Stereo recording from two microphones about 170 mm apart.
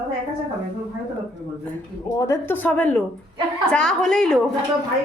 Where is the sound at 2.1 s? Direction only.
20° left (ahead or behind); by 4.5 s centre (ahead or behind).